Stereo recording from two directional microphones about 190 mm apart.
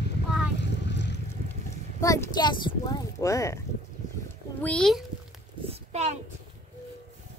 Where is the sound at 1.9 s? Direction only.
15° left (ahead or behind).